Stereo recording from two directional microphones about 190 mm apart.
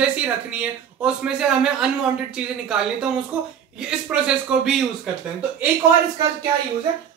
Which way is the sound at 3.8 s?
5° right (ahead or behind).